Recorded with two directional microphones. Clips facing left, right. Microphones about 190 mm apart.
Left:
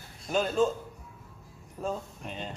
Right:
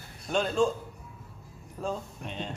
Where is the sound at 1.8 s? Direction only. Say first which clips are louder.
Even; 5° left (ahead or behind).